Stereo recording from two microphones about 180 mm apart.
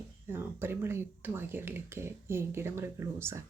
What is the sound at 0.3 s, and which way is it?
Speech, 15° right (ahead or behind).